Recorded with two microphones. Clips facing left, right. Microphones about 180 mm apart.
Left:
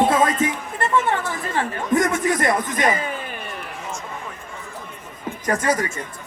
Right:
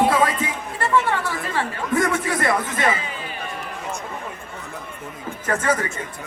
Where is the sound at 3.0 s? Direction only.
50° left (ahead or behind).